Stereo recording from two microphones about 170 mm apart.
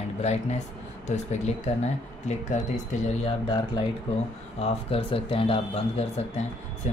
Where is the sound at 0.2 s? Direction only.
40° left (ahead or behind).